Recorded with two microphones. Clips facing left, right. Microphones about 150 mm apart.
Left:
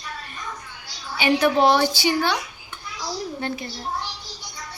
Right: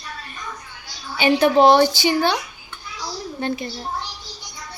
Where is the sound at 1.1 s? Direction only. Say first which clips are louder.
Right 3 dB; 25° right (ahead or behind).